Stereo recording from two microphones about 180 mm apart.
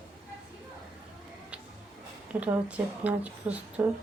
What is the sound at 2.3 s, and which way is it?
A woman's voice, 10° right (ahead or behind).